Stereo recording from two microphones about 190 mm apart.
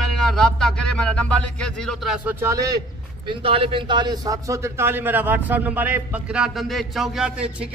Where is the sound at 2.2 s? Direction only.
15° right (ahead or behind).